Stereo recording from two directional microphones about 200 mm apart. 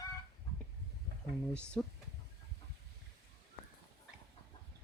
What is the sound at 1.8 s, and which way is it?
Speech, 5° left (ahead or behind).